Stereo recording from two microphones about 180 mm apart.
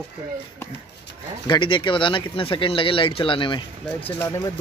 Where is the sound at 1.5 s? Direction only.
25° left (ahead or behind).